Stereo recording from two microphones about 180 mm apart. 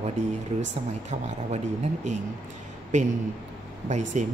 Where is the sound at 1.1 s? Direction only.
40° right (ahead or behind).